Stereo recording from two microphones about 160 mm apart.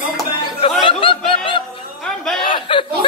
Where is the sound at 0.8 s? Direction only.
30° left (ahead or behind).